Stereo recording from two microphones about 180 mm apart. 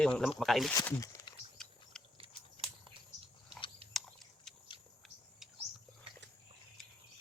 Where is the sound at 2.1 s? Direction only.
30° right (ahead or behind).